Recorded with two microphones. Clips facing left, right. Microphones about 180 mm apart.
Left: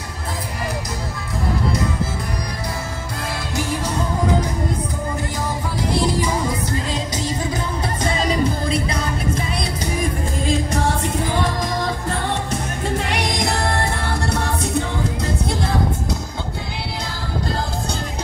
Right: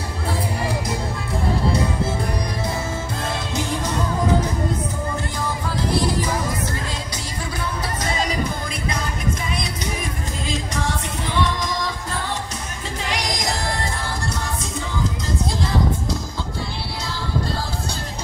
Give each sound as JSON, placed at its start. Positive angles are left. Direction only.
{"t": 10.7, "sound": "music", "side_deg": 60}